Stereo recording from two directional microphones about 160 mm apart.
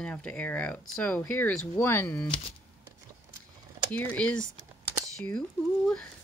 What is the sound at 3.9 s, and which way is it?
Speech, 10° left (ahead or behind).